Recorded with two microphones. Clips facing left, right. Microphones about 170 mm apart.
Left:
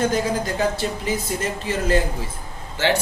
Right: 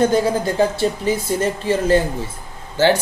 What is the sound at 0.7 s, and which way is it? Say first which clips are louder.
Speech: right 5 dB; 30° right (ahead or behind).